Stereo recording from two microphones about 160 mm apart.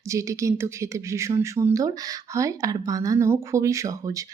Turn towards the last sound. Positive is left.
turn(degrees=-20)  # may be behind; listen again after turning